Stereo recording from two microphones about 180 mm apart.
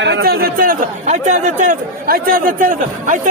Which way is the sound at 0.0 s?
65° right (ahead or behind).